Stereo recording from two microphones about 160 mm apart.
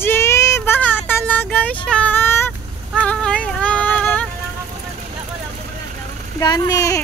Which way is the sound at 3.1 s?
5° left (ahead or behind).